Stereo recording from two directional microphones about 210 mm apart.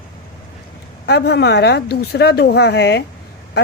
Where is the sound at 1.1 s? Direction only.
50° left (ahead or behind).